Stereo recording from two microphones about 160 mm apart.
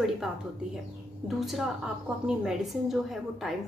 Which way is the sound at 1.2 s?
Centre (ahead or behind).